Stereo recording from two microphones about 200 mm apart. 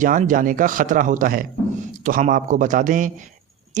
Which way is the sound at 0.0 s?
40° right (ahead or behind).